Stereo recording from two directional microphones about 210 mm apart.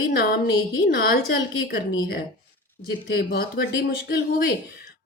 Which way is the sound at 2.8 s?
50° left (ahead or behind).